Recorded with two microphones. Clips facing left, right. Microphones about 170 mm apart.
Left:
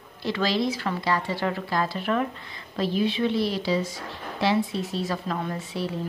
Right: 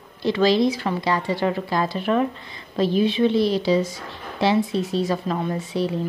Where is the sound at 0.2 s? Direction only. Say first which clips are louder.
Right 7 dB; 20° right (ahead or behind).